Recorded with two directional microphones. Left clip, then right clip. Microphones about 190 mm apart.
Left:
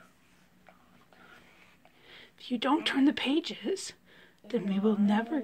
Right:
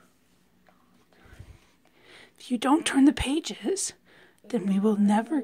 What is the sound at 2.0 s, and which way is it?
Speech, 50° right (ahead or behind).